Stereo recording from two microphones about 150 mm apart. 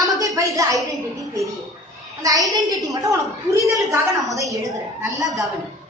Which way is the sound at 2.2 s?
25° right (ahead or behind).